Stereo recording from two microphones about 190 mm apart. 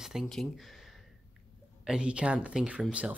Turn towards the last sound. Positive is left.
turn(degrees=-5)  # may be behind; listen again after turning